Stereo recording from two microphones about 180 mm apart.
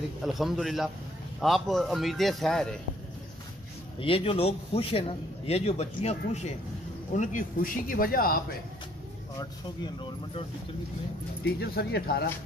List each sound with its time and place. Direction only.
0.2 s a man's voice: centre (ahead or behind)
4.0 s a man's voice: 30° left (ahead or behind)
7.2 s a man's voice: 50° left (ahead or behind)
11.4 s speech: 60° left (ahead or behind)